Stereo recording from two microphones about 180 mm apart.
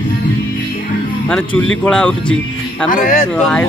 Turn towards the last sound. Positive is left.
turn(degrees=5)  # may be behind; listen again after turning